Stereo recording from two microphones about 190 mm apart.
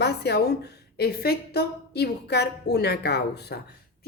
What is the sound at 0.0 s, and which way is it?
A woman's voice, 60° left (ahead or behind).